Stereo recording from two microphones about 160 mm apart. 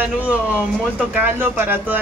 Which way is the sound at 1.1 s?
10° right (ahead or behind).